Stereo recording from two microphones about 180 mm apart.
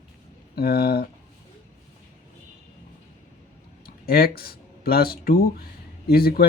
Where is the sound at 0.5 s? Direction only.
60° left (ahead or behind).